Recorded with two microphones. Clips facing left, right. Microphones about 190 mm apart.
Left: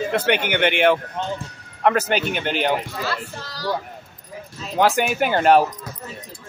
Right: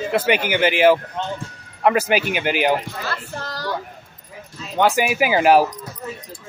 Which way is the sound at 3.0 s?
50° right (ahead or behind).